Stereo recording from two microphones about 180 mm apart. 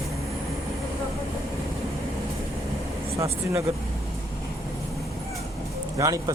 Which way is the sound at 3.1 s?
15° right (ahead or behind).